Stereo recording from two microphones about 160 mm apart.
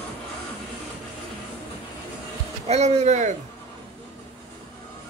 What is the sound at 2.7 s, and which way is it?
Speech, 45° right (ahead or behind).